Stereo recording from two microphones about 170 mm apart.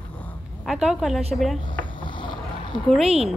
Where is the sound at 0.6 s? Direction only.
5° right (ahead or behind).